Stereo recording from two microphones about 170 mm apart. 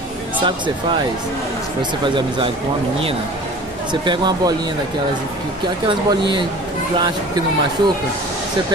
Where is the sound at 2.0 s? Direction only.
30° right (ahead or behind).